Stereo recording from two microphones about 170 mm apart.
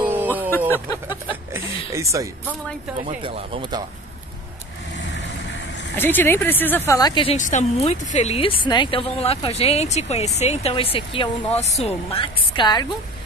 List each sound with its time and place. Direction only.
0.0 s a sound: 10° right (ahead or behind)
1.0 s speech: 15° right (ahead or behind)
3.2 s speech: 30° right (ahead or behind)
5.9 s speech: 10° left (ahead or behind)
7.0 s a woman's voice: 25° left (ahead or behind)
7.3 s a woman's voice: 45° left (ahead or behind); by 12.8 s 25° left (ahead or behind)